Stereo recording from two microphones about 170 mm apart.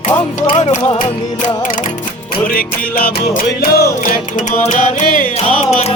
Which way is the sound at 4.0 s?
50° left (ahead or behind).